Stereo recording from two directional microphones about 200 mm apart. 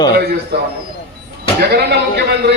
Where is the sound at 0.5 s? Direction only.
55° right (ahead or behind).